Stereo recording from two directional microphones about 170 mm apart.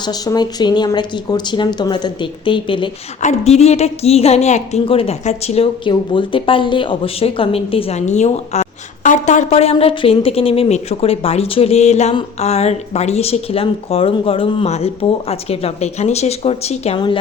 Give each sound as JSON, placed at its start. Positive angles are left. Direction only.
{"t": 0.0, "sound": "speech", "side_deg": 25}
{"t": 3.2, "sound": "a woman's voice", "side_deg": 40}